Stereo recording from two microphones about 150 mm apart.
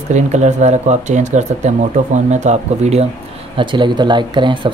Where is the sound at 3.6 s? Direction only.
30° right (ahead or behind).